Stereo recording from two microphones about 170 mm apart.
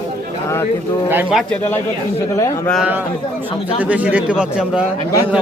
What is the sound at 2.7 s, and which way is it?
Speech, 5° right (ahead or behind).